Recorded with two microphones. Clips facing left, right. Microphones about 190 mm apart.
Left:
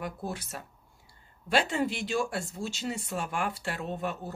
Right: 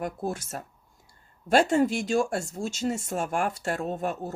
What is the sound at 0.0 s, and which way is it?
Speech, 45° right (ahead or behind).